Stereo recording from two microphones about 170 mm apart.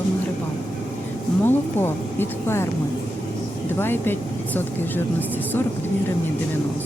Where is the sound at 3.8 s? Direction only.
10° left (ahead or behind).